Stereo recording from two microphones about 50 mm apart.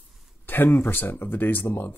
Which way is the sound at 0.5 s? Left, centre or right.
Left.